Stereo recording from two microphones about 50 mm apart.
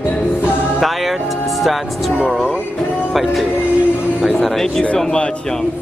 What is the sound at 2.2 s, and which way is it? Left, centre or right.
Speech, centre.